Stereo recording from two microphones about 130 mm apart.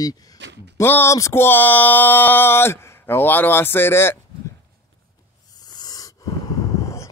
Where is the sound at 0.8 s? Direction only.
20° left (ahead or behind).